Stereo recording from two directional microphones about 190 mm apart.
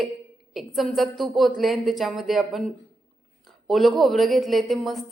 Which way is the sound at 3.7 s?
Centre (ahead or behind).